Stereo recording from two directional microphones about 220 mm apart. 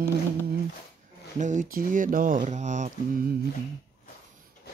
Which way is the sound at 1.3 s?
35° right (ahead or behind).